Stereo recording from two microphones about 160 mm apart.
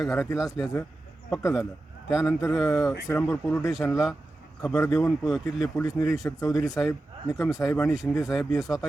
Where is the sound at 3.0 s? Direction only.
15° left (ahead or behind); by 6.3 s centre (ahead or behind).